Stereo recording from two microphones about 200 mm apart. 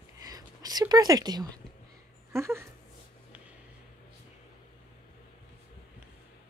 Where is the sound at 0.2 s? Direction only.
20° right (ahead or behind).